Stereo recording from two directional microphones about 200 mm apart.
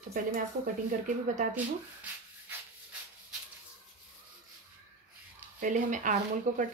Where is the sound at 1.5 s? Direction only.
10° right (ahead or behind).